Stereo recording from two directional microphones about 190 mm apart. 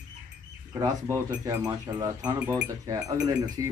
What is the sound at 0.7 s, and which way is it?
Speech, 20° right (ahead or behind).